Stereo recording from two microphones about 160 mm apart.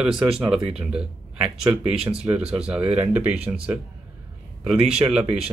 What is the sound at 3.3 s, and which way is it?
Speech, 40° right (ahead or behind).